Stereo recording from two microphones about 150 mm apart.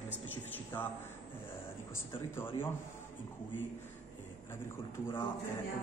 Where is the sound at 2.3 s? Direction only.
15° left (ahead or behind).